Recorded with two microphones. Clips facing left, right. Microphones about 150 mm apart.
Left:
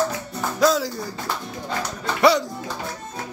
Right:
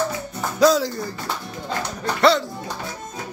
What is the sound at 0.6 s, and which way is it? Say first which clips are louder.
Music: right 3 dB; centre (ahead or behind).